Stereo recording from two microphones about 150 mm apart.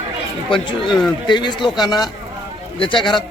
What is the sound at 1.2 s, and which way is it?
A man's voice, 30° left (ahead or behind).